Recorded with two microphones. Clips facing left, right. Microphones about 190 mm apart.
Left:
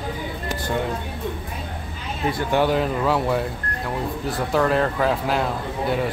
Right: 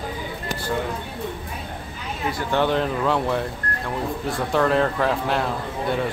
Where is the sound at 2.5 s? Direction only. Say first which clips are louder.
Left 1 dB; 10° left (ahead or behind).